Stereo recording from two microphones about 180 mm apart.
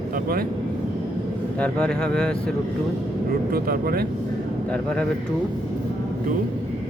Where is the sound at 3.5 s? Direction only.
60° right (ahead or behind).